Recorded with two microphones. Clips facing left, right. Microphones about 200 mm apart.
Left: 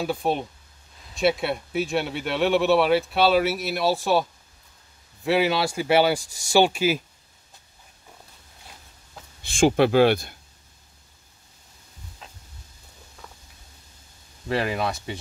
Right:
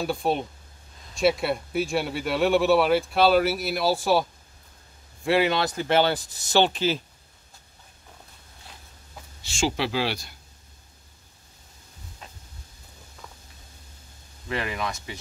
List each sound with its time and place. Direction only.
0.0 s speech: centre (ahead or behind)
9.4 s speech: 55° left (ahead or behind)
14.5 s speech: 35° left (ahead or behind)